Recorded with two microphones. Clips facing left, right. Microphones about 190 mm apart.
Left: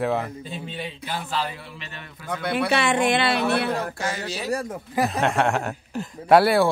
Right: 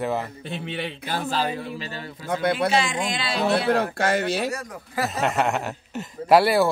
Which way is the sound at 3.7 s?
60° right (ahead or behind).